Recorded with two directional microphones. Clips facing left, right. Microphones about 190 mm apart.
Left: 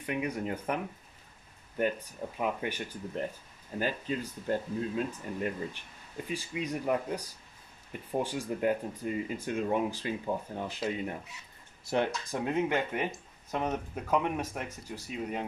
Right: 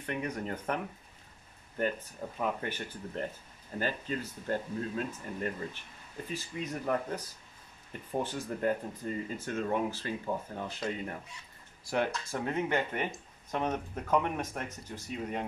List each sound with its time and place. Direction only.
0.0 s speech: 10° left (ahead or behind)
2.3 s speech: 10° left (ahead or behind)
12.3 s speech: 10° left (ahead or behind)